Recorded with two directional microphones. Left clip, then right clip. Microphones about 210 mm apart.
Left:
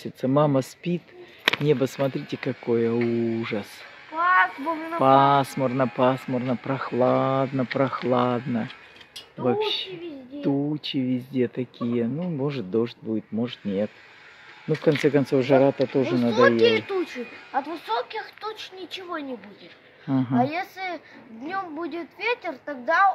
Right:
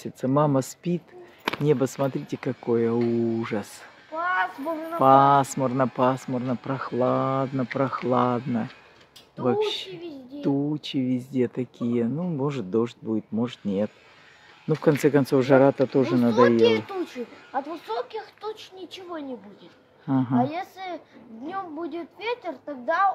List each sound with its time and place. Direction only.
0.0 s speech: centre (ahead or behind)
1.4 s a sound: 35° right (ahead or behind)
1.7 s speech: 10° right (ahead or behind)
4.2 s child singing: 30° right (ahead or behind)
4.9 s speech: 5° right (ahead or behind); by 16.3 s 20° right (ahead or behind)
16.3 s speech: 55° right (ahead or behind)
17.5 s speech: 20° right (ahead or behind); by 23.1 s 5° right (ahead or behind)